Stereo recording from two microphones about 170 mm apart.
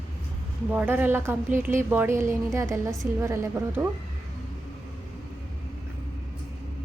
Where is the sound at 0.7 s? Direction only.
10° right (ahead or behind).